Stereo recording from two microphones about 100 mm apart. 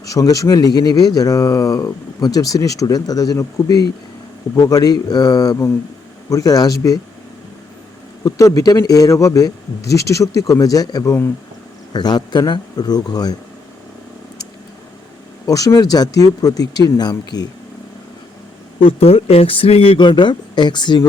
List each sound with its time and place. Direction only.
0.0 s speech: 35° left (ahead or behind)
8.2 s speech: 35° left (ahead or behind)
15.4 s speech: 35° left (ahead or behind)
18.8 s speech: 70° left (ahead or behind); by 21.1 s 50° left (ahead or behind)